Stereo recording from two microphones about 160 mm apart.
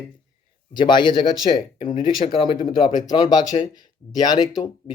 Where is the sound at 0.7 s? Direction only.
30° left (ahead or behind).